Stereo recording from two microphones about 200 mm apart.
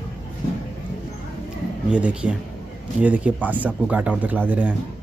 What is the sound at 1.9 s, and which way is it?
Speech, 5° right (ahead or behind).